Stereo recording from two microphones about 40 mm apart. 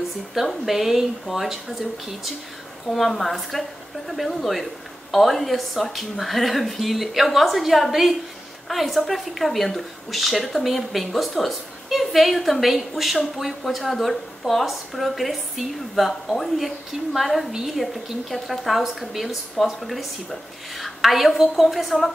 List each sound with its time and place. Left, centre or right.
0.7 s speech: centre
2.9 s speech: centre